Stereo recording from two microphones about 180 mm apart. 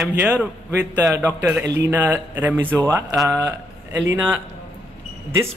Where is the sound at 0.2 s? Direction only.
10° right (ahead or behind).